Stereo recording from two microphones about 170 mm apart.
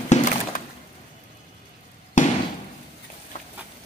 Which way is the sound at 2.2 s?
50° left (ahead or behind).